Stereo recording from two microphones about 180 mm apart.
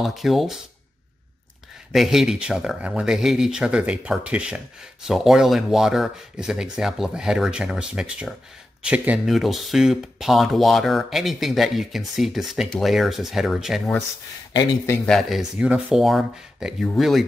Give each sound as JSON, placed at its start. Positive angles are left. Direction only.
{"t": 0.0, "sound": "speech", "side_deg": 0}
{"t": 1.9, "sound": "speech", "side_deg": 0}
{"t": 14.5, "sound": "speech", "side_deg": 20}
{"t": 15.0, "sound": "speech", "side_deg": 0}